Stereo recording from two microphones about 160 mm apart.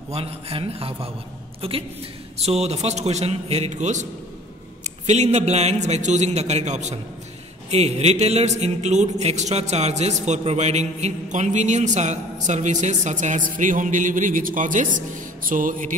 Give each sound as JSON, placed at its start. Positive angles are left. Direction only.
{"t": 0.1, "sound": "a man's voice", "side_deg": -35}